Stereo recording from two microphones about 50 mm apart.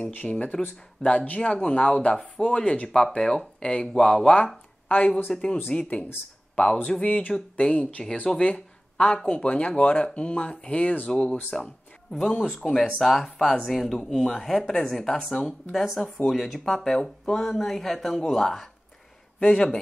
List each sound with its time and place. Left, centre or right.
0.0 s speech: left
1.0 s speech: centre
4.8 s a sound: left
5.7 s speech: left
8.0 s speech: centre
8.4 s speech: left
11.5 s speech: centre
13.9 s speech: centre
15.7 s speech: centre
16.6 s speech: centre
19.4 s speech: centre